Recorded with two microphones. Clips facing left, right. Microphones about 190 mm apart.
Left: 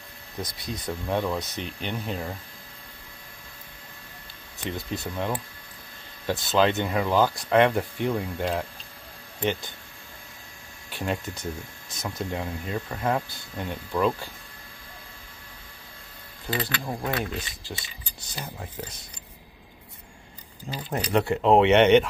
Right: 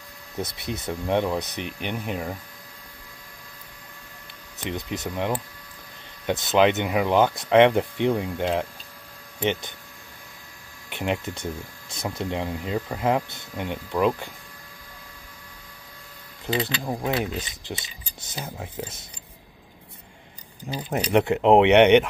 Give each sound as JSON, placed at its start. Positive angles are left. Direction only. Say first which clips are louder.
{"t": 0.4, "sound": "speech", "louder": "right 4 dB", "side_deg": -25}
{"t": 4.6, "sound": "speech", "louder": "right 2 dB", "side_deg": -20}
{"t": 10.9, "sound": "speech", "louder": "right 3 dB", "side_deg": -20}
{"t": 16.4, "sound": "speech", "louder": "right 4 dB", "side_deg": -20}
{"t": 20.7, "sound": "speech", "louder": "right 3 dB", "side_deg": -20}